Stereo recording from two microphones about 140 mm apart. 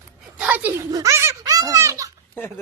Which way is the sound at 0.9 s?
25° right (ahead or behind).